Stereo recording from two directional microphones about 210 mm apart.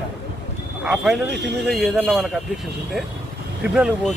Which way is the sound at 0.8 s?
5° right (ahead or behind).